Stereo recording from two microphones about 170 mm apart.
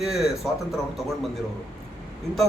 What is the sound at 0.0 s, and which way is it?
Speech, centre (ahead or behind).